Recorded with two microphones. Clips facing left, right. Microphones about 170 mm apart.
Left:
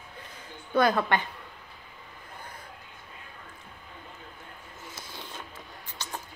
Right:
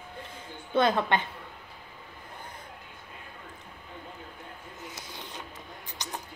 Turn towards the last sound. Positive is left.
turn(degrees=-15)  # may be behind; listen again after turning